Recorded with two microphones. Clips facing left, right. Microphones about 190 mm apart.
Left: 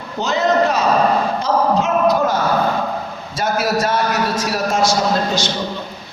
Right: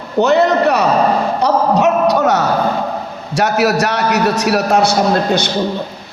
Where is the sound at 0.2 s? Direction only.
65° right (ahead or behind).